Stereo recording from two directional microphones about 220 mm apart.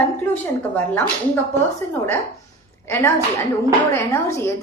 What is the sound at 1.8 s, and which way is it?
A woman's voice, 10° left (ahead or behind).